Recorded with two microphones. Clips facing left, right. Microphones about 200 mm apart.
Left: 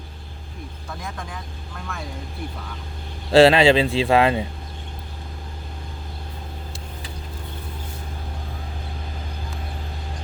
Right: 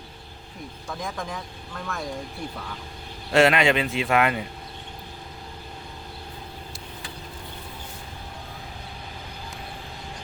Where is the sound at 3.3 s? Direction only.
30° left (ahead or behind).